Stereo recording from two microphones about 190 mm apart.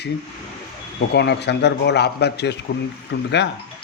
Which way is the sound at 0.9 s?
65° left (ahead or behind).